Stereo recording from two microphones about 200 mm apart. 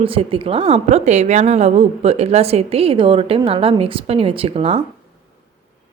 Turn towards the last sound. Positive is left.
turn(degrees=-30)  # may be behind; listen again after turning